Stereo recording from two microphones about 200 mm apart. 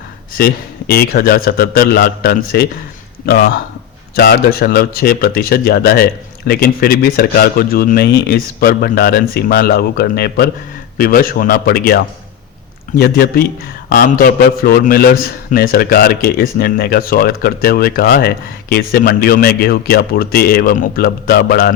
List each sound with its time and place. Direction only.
0.3 s a man's voice: 50° left (ahead or behind)